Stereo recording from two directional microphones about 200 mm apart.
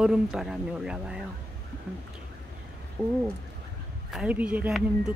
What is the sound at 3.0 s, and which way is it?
Speech, 10° right (ahead or behind).